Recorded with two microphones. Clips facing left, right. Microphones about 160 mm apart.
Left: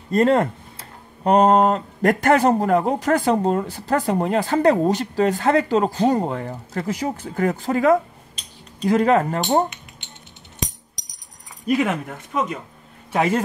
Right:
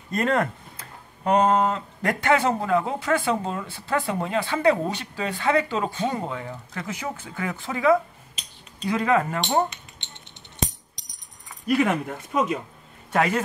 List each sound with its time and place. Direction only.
0.1 s speech: 30° left (ahead or behind)
11.8 s speech: centre (ahead or behind)